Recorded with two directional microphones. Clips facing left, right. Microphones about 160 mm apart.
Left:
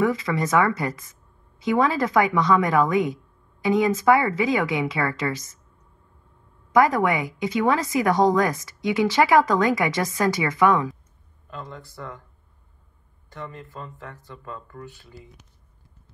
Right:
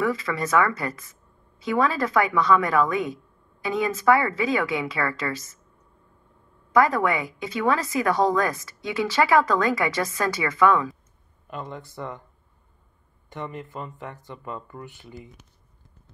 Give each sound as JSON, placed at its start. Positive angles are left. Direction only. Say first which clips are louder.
{"t": 0.0, "sound": "a woman's voice", "louder": "left 3 dB", "side_deg": 20}
{"t": 6.7, "sound": "a woman's voice", "louder": "left 1 dB", "side_deg": 15}
{"t": 11.5, "sound": "speech", "louder": "right 3 dB", "side_deg": -20}
{"t": 13.3, "sound": "speech", "louder": "right 3 dB", "side_deg": -20}